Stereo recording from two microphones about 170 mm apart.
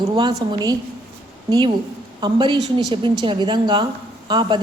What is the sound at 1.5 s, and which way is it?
A woman's voice, 25° right (ahead or behind).